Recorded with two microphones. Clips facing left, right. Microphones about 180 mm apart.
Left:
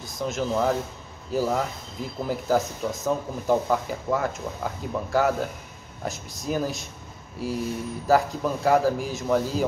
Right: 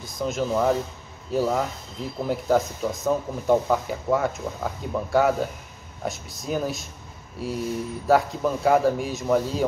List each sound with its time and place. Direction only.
0.0 s speech: centre (ahead or behind)